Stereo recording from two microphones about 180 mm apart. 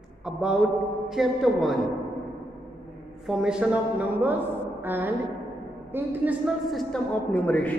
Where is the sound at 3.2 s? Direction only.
5° right (ahead or behind).